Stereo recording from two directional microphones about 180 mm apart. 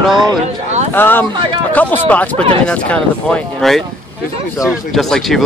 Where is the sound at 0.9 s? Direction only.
10° left (ahead or behind).